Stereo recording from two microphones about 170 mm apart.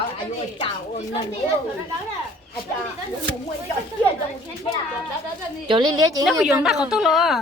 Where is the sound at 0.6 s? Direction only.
30° left (ahead or behind).